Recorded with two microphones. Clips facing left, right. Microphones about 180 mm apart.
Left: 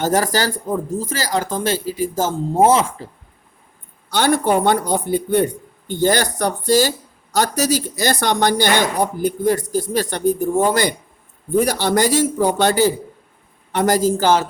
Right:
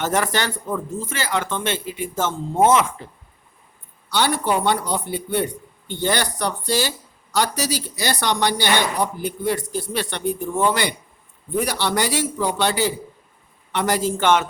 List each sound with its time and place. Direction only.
0.0 s speech: 35° left (ahead or behind)
4.1 s speech: 45° left (ahead or behind)